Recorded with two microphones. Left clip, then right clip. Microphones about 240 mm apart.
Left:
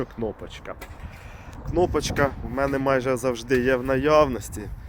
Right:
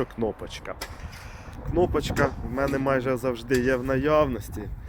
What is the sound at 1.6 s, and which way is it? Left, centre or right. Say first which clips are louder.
Speech: left 1 dB; centre.